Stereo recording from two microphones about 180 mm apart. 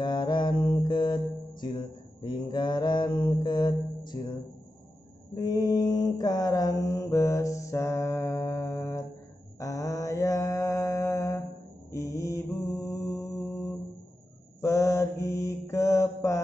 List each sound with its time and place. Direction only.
0.0 s mantra: 25° left (ahead or behind)
5.3 s mantra: 20° left (ahead or behind)